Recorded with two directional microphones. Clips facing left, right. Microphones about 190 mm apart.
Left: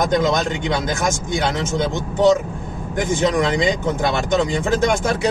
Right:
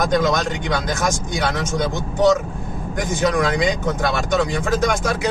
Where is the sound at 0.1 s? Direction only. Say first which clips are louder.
Left 1 dB; 25° left (ahead or behind).